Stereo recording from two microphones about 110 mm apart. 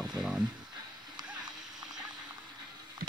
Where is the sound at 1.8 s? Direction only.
5° right (ahead or behind).